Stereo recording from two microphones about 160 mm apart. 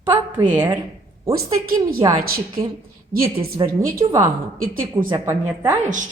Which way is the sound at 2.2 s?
65° right (ahead or behind).